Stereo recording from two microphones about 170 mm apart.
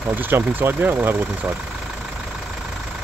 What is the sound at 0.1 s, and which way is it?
Speech, 10° right (ahead or behind).